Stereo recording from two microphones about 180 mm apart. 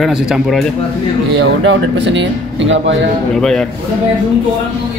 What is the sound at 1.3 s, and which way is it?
Speech, 85° right.